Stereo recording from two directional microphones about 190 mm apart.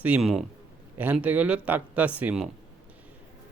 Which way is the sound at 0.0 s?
5° right (ahead or behind).